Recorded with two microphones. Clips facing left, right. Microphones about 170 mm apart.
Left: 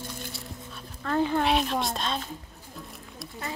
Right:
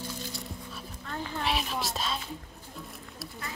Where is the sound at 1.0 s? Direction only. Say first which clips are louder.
Left 11 dB; 90° left.